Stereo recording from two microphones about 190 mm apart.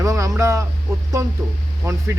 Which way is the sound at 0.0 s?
15° right (ahead or behind).